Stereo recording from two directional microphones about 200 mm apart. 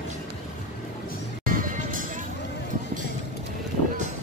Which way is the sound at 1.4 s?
40° right (ahead or behind).